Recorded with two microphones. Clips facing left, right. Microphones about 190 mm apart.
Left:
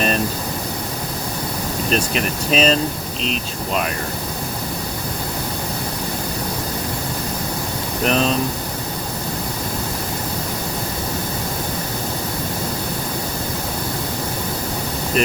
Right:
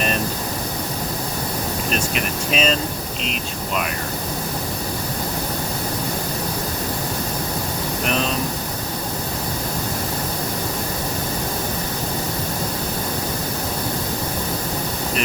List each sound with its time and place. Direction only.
2.5 s speech: 35° left (ahead or behind)